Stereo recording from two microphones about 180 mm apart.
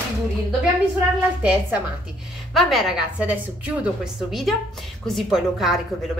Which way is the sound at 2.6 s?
Centre (ahead or behind).